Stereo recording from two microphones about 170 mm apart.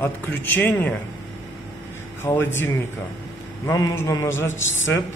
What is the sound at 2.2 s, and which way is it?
A man's voice, 10° left (ahead or behind).